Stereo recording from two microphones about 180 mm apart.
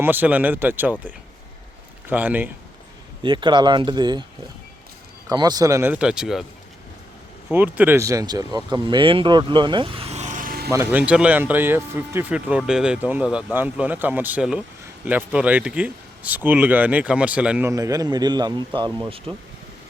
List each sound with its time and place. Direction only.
0.0 s speech: 10° right (ahead or behind)
3.2 s speech: 25° right (ahead or behind)
5.3 s speech: 20° right (ahead or behind); by 6.4 s 5° right (ahead or behind)
7.5 s speech: 10° right (ahead or behind); by 10.7 s 50° right (ahead or behind)
10.7 s speech: 10° right (ahead or behind)
17.7 s speech: 20° right (ahead or behind)